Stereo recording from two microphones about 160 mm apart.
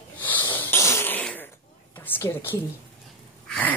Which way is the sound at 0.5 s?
15° left (ahead or behind).